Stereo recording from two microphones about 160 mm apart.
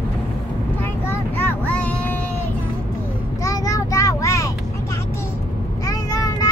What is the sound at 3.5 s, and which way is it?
Child singing, 20° left (ahead or behind).